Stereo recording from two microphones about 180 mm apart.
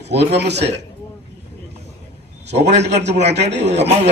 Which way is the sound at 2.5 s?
35° right (ahead or behind).